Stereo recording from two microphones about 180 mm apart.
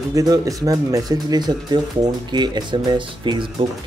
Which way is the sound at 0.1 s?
20° right (ahead or behind).